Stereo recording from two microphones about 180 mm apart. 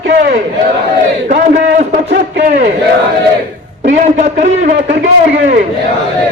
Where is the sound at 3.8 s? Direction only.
40° right (ahead or behind).